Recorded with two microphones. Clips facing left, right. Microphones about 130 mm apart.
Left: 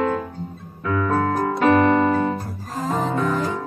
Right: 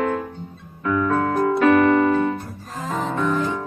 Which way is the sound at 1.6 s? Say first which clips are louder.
Even; 30° left (ahead or behind).